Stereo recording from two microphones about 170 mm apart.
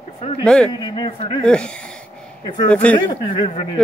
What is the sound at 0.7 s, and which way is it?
Speech, 25° left (ahead or behind).